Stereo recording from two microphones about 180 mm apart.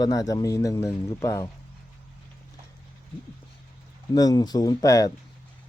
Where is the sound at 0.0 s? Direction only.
20° left (ahead or behind).